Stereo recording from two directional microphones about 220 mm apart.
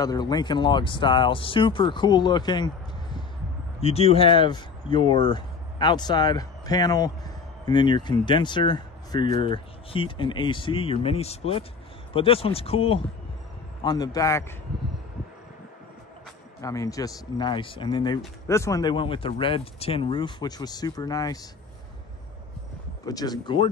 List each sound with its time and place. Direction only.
0.0 s speech: 15° left (ahead or behind)
3.8 s speech: 30° left (ahead or behind)
16.6 s speech: 15° left (ahead or behind)
23.0 s speech: 15° left (ahead or behind)